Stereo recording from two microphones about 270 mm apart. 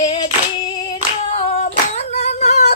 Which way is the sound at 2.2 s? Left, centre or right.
Left.